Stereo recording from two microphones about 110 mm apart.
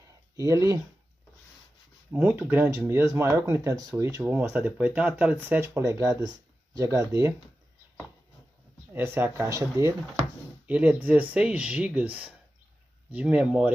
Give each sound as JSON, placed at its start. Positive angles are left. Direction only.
{"t": 0.4, "sound": "speech", "side_deg": -30}
{"t": 2.1, "sound": "speech", "side_deg": -20}
{"t": 8.9, "sound": "speech", "side_deg": -20}
{"t": 10.7, "sound": "speech", "side_deg": -10}